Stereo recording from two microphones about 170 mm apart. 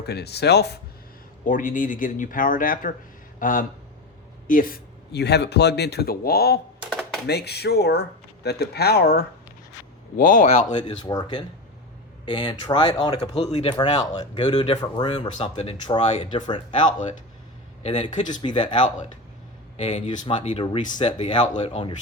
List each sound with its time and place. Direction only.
0.0 s a man's voice: 75° left (ahead or behind)
1.5 s a man's voice: 50° left (ahead or behind)
10.2 s speech: 50° left (ahead or behind)
10.8 s speech: 30° left (ahead or behind)
17.8 s speech: 40° left (ahead or behind)
18.4 s speech: 30° left (ahead or behind)
19.7 s speech: 40° left (ahead or behind)